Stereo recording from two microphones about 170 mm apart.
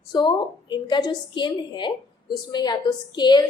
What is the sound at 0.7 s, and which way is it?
A woman's voice, 25° left (ahead or behind).